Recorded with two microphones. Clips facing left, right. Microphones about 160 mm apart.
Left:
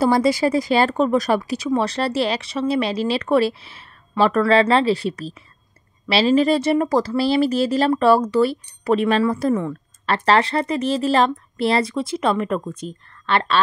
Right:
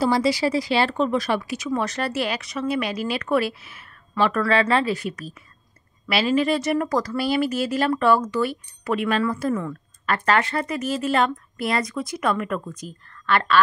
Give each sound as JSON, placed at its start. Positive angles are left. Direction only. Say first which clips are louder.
{"t": 0.0, "sound": "speech", "louder": "left 3 dB", "side_deg": 50}